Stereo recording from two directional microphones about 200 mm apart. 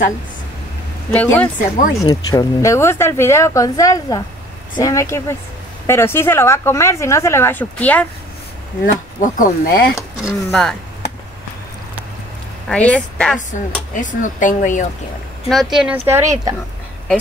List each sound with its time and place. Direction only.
1.1 s a woman's voice: 10° left (ahead or behind)
8.8 s speech: 40° left (ahead or behind)
10.2 s speech: centre (ahead or behind)
12.6 s speech: 5° left (ahead or behind)
13.5 s speech: 40° left (ahead or behind)
15.4 s speech: centre (ahead or behind)
16.1 s a woman's voice: 15° right (ahead or behind)